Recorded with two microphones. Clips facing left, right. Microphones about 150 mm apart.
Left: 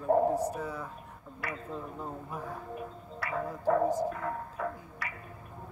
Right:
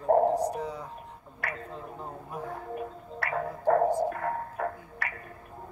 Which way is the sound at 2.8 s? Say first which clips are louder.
Right 4 dB; 60° right (ahead or behind).